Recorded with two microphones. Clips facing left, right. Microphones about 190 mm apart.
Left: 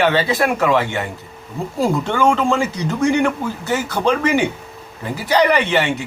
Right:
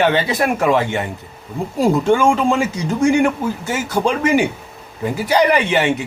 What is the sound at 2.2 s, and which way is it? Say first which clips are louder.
Speech: right 1 dB; 10° right (ahead or behind).